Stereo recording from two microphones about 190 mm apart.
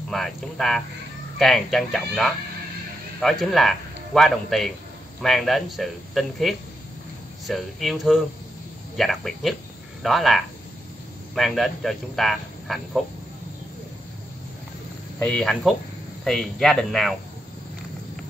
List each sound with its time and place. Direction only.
0.1 s speech: centre (ahead or behind)
15.2 s speech: 5° left (ahead or behind)